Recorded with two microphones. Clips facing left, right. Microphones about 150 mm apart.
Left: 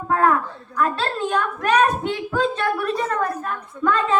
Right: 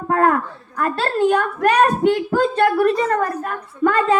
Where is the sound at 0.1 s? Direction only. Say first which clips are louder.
Right 2 dB; 60° right (ahead or behind).